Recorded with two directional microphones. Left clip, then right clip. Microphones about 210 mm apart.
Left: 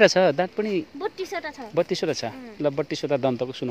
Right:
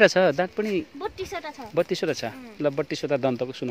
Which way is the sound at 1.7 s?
15° right (ahead or behind).